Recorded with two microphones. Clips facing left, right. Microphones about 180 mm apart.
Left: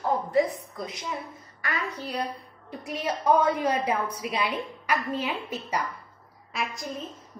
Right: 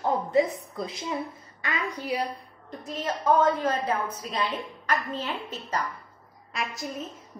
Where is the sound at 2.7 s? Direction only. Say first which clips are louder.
Left 1 dB; 10° left (ahead or behind).